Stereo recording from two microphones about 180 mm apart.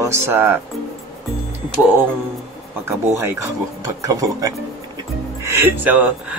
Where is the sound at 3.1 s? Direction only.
15° right (ahead or behind).